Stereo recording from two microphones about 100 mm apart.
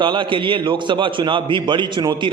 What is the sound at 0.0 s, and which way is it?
A man's voice, 55° right (ahead or behind).